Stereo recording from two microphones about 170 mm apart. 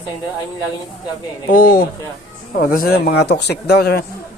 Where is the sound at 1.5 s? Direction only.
55° left (ahead or behind).